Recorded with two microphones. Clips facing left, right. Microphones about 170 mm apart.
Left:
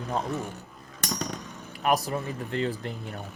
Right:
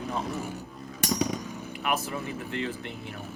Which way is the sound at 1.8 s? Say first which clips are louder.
Left 5 dB; 35° left (ahead or behind).